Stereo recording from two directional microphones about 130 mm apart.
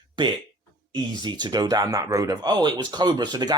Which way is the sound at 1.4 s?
30° right (ahead or behind).